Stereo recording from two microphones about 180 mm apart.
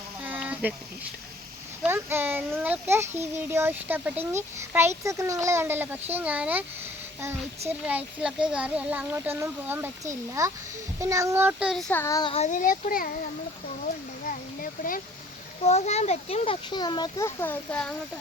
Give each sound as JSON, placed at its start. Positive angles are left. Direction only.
{"t": 0.2, "sound": "a sound", "side_deg": -5}
{"t": 1.8, "sound": "a child's voice", "side_deg": -10}
{"t": 7.7, "sound": "a child's voice", "side_deg": -10}
{"t": 11.7, "sound": "child singing", "side_deg": 5}
{"t": 12.3, "sound": "speech", "side_deg": 40}
{"t": 15.6, "sound": "a child's voice", "side_deg": 40}